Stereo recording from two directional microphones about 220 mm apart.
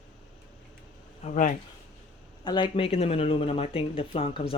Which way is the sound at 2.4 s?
20° left (ahead or behind).